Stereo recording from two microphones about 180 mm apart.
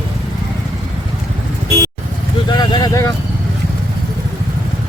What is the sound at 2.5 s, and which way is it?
Vehicle, 25° left (ahead or behind).